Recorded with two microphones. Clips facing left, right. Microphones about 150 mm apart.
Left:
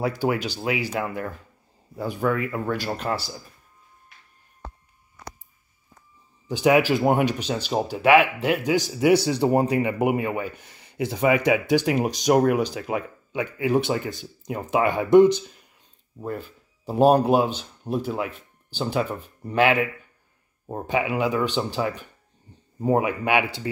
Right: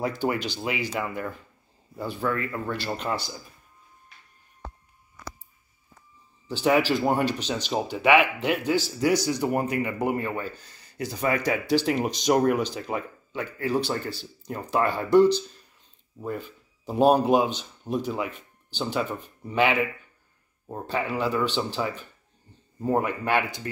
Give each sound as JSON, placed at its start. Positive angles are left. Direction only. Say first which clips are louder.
{"t": 0.0, "sound": "speech", "louder": "left 2 dB", "side_deg": 5}
{"t": 6.4, "sound": "speech", "louder": "left 3 dB", "side_deg": 10}
{"t": 11.2, "sound": "speech", "louder": "left 5 dB", "side_deg": 15}
{"t": 11.8, "sound": "speech", "louder": "left 2 dB", "side_deg": 5}
{"t": 16.3, "sound": "speech", "louder": "left 1 dB", "side_deg": 5}
{"t": 20.6, "sound": "speech", "louder": "left 4 dB", "side_deg": 15}